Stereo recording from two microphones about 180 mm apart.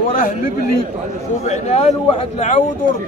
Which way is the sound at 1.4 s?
35° left (ahead or behind).